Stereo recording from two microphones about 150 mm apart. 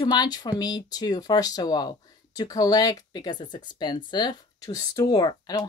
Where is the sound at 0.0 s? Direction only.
30° left (ahead or behind).